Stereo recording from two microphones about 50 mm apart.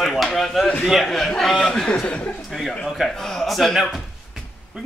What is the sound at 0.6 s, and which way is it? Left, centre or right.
Speech, left.